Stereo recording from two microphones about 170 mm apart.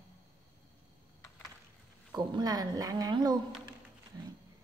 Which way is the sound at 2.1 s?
25° right (ahead or behind).